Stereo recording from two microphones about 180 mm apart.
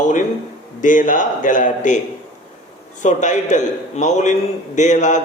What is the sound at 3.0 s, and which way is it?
Speech, 45° left (ahead or behind).